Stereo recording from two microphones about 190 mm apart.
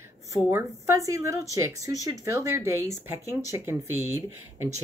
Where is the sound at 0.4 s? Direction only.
10° right (ahead or behind).